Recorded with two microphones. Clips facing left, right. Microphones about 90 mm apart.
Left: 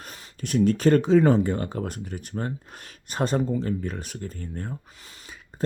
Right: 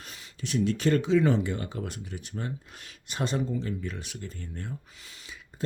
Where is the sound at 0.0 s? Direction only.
45° left (ahead or behind).